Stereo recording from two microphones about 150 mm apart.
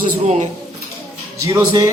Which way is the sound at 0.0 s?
55° right (ahead or behind).